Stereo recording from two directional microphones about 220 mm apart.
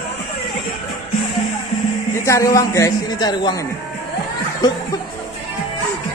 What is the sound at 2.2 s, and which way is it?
Speech, 15° left (ahead or behind).